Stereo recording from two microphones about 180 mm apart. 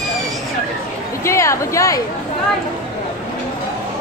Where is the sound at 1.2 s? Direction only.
15° left (ahead or behind).